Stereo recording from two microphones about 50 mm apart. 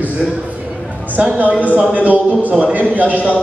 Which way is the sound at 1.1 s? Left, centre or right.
Right.